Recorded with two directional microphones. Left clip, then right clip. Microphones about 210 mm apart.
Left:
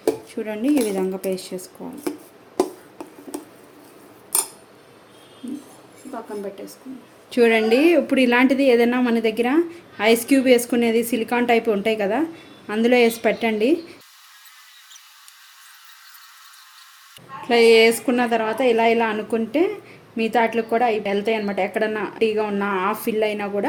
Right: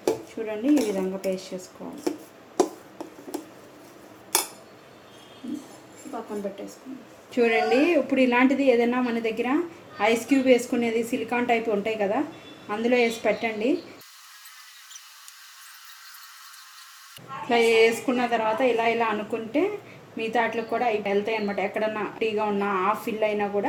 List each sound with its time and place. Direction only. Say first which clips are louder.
0.4 s a woman's voice: left 2 dB; 55° left (ahead or behind)
7.3 s a woman's voice: left 5 dB; 50° left (ahead or behind)
17.5 s a woman's voice: left 6 dB; 50° left (ahead or behind)